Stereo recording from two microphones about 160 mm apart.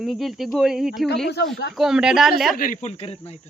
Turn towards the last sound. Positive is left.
turn(degrees=40)  # may be behind; listen again after turning